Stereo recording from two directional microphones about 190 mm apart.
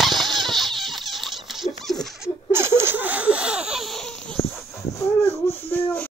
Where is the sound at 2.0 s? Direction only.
Centre (ahead or behind).